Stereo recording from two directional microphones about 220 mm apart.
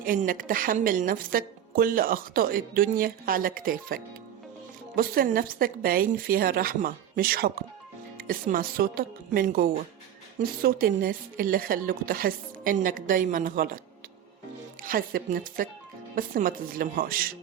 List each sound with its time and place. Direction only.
0.0 s a woman's voice: 40° right (ahead or behind)
14.8 s a woman's voice: 40° right (ahead or behind)